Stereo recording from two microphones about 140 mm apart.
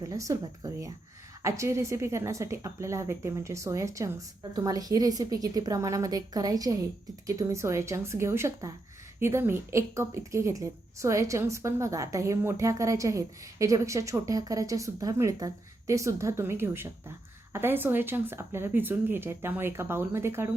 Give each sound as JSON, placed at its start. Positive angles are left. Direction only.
{"t": 0.0, "sound": "a woman's voice", "side_deg": -25}